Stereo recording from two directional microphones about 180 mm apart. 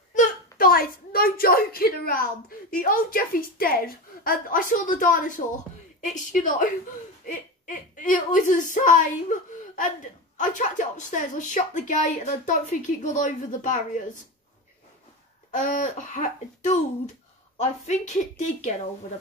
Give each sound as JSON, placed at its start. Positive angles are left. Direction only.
{"t": 0.1, "sound": "a sound", "side_deg": 50}
{"t": 2.7, "sound": "speech", "side_deg": 50}
{"t": 6.3, "sound": "a woman's voice", "side_deg": 45}
{"t": 15.5, "sound": "a woman's voice", "side_deg": 45}